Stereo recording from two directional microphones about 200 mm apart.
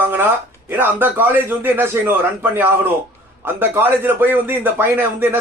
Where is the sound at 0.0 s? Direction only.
10° right (ahead or behind).